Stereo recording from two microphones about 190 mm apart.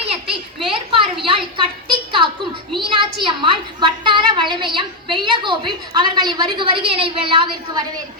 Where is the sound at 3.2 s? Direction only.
25° right (ahead or behind).